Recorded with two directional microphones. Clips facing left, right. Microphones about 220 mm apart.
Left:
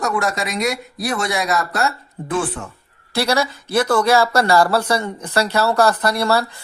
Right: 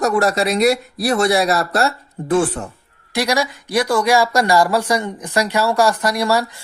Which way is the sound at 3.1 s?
15° right (ahead or behind).